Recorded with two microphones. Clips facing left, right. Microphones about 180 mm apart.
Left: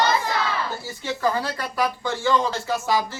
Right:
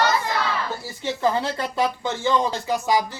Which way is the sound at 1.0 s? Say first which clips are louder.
Right 2 dB; 25° right (ahead or behind).